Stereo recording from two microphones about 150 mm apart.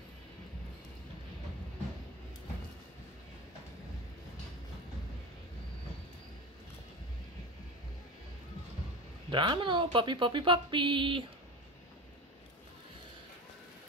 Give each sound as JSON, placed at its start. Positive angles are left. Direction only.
{"t": 9.3, "sound": "speech", "side_deg": -30}